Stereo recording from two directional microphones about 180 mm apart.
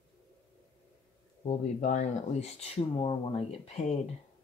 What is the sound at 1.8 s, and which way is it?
Speech, 40° left (ahead or behind).